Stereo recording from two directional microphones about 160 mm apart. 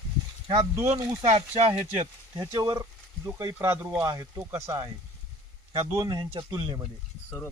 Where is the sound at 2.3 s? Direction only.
25° right (ahead or behind).